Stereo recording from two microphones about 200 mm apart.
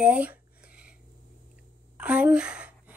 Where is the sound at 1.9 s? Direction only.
5° right (ahead or behind).